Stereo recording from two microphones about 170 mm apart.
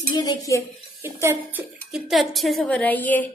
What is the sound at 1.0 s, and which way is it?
Speech, 15° right (ahead or behind).